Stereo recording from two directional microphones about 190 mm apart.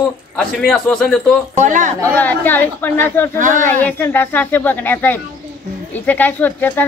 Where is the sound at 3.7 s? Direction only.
10° left (ahead or behind).